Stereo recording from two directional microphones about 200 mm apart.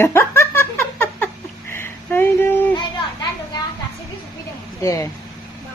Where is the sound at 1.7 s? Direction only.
10° left (ahead or behind).